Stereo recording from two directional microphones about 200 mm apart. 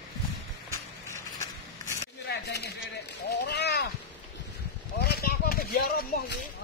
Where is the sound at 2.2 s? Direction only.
55° left (ahead or behind).